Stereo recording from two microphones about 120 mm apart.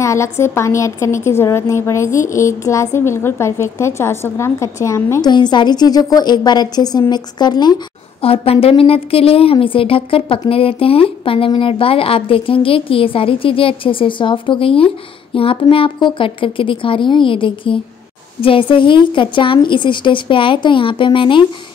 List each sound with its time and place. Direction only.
0.0 s a woman's voice: 25° left (ahead or behind)
5.2 s a woman's voice: 35° left (ahead or behind)
8.2 s speech: 50° left (ahead or behind)